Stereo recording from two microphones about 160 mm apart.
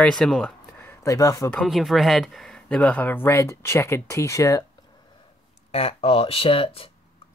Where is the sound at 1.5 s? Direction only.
Centre (ahead or behind); by 4.6 s 20° left (ahead or behind).